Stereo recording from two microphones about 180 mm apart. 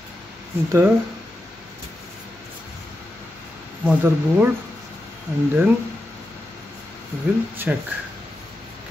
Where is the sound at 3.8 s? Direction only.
10° right (ahead or behind).